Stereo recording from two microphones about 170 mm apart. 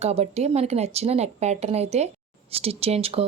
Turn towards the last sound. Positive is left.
turn(degrees=-35)  # may be behind; listen again after turning